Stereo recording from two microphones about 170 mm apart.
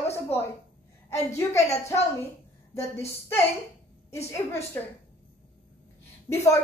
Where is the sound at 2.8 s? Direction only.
15° left (ahead or behind).